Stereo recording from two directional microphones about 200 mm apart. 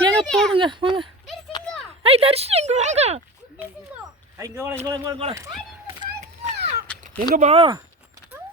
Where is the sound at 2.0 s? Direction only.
30° right (ahead or behind).